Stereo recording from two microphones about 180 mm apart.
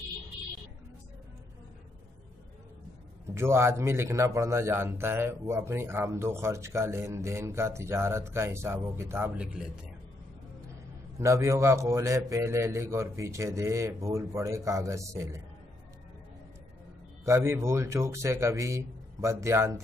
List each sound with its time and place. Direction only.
3.3 s a man's voice: 15° right (ahead or behind)
11.1 s a man's voice: 15° right (ahead or behind)
17.2 s a man's voice: 15° right (ahead or behind)